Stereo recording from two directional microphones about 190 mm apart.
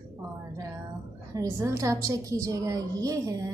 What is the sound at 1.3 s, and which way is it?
A woman's voice, 15° right (ahead or behind).